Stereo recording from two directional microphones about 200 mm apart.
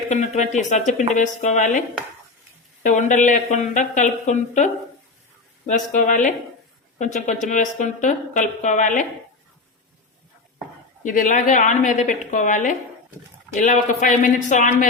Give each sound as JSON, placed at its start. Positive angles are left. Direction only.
{"t": 0.1, "sound": "speech", "side_deg": 35}
{"t": 2.8, "sound": "speech", "side_deg": 40}
{"t": 11.0, "sound": "speech", "side_deg": 40}